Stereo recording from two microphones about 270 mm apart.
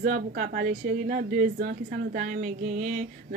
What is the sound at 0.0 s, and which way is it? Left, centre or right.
A woman's voice, right.